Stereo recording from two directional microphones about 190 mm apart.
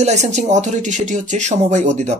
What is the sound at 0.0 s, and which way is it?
Speech, 35° right (ahead or behind).